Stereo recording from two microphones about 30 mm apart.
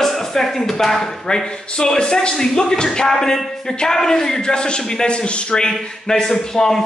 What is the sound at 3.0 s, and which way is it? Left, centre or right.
A man's voice, centre.